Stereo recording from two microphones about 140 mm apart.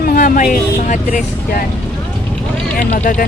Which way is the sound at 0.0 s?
85° left.